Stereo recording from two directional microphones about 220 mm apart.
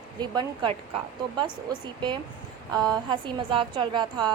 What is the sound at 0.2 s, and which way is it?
Speech, 20° right (ahead or behind).